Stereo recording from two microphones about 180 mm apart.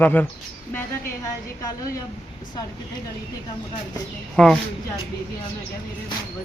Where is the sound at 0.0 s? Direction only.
10° left (ahead or behind).